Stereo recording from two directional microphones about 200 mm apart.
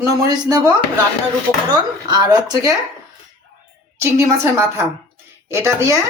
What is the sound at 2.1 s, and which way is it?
Speech, 20° right (ahead or behind).